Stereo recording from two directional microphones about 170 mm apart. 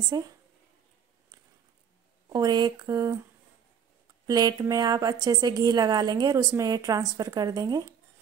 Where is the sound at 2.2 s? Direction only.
25° right (ahead or behind).